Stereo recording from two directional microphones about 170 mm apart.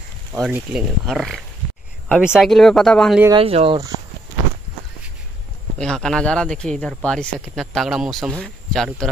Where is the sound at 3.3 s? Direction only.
35° right (ahead or behind).